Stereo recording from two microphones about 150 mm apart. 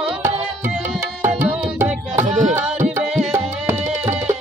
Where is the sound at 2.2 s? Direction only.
50° right (ahead or behind).